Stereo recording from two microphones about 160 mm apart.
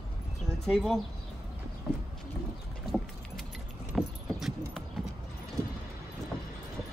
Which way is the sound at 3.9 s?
Centre (ahead or behind).